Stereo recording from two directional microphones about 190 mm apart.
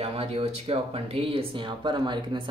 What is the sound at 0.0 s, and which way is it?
Speech, 30° right (ahead or behind).